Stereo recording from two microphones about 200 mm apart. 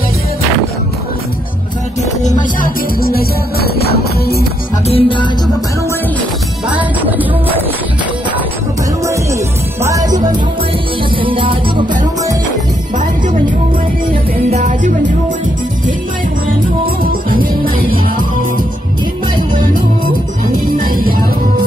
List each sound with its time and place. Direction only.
2.6 s music: 50° left (ahead or behind)
4.8 s music: 25° left (ahead or behind)
6.7 s music: 10° right (ahead or behind)
9.0 s music: 15° right (ahead or behind)
11.1 s music: 25° right (ahead or behind)
14.5 s music: 35° right (ahead or behind)
16.8 s music: 45° right (ahead or behind)
20.7 s music: 45° right (ahead or behind)